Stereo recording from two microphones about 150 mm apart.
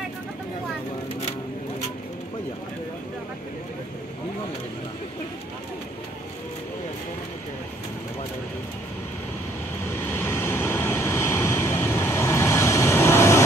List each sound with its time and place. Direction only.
9.8 s vehicle: 15° left (ahead or behind)